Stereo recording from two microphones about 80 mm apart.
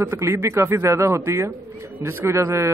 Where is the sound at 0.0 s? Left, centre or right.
Right.